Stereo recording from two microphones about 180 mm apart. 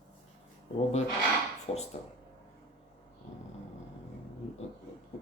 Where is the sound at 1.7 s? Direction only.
35° left (ahead or behind).